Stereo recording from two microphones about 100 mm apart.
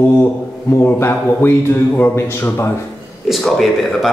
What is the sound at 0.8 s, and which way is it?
Speech, 25° left (ahead or behind).